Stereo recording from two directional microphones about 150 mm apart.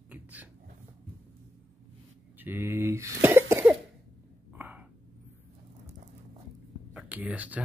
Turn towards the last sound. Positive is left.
turn(degrees=-10)  # may be behind; listen again after turning